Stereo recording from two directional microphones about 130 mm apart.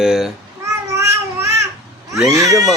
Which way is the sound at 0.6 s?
25° right (ahead or behind).